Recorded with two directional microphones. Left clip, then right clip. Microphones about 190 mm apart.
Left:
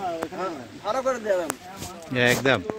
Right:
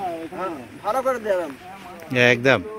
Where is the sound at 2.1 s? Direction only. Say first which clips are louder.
Right 4 dB; 5° right (ahead or behind).